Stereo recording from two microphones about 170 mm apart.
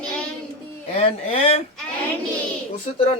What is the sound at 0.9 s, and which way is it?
Speech, 35° left (ahead or behind).